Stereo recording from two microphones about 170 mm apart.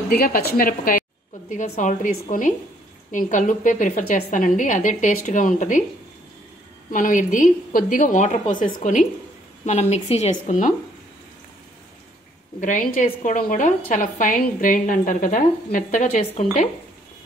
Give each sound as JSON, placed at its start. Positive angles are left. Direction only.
{"t": 0.1, "sound": "a woman's voice", "side_deg": 60}
{"t": 6.9, "sound": "a woman's voice", "side_deg": 50}
{"t": 12.5, "sound": "a woman's voice", "side_deg": 45}